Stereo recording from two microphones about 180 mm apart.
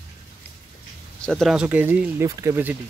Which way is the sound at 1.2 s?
Centre (ahead or behind).